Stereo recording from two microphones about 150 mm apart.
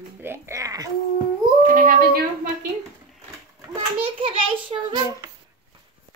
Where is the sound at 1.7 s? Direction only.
75° right (ahead or behind).